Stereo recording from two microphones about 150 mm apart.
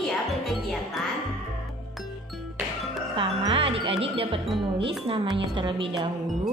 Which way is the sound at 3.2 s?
35° right (ahead or behind).